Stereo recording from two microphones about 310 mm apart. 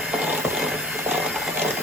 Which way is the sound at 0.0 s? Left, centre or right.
Centre.